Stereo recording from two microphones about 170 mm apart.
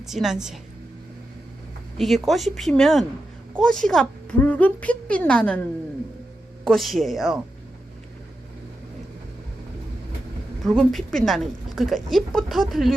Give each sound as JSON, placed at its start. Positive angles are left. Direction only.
{"t": 0.0, "sound": "speech", "side_deg": 0}
{"t": 2.0, "sound": "a woman's voice", "side_deg": 0}
{"t": 6.7, "sound": "speech", "side_deg": 0}
{"t": 10.6, "sound": "speech", "side_deg": 0}